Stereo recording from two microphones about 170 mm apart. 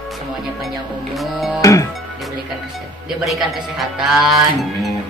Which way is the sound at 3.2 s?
Centre (ahead or behind).